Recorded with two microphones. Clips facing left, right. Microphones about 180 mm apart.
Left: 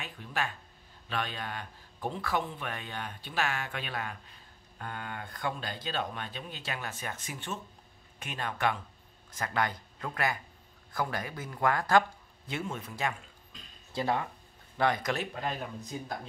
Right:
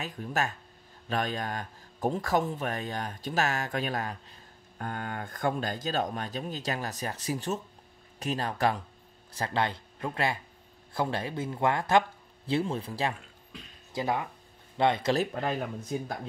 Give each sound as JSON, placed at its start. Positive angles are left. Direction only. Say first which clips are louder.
{"t": 0.0, "sound": "a man's voice", "louder": "right 4 dB", "side_deg": -40}
{"t": 13.9, "sound": "speech", "louder": "right 1 dB", "side_deg": -20}